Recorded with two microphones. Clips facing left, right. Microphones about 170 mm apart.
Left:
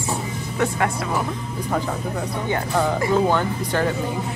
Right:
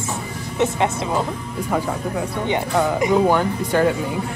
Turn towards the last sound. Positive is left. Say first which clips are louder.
# right 3 dB
turn(degrees=-15)  # may be behind; listen again after turning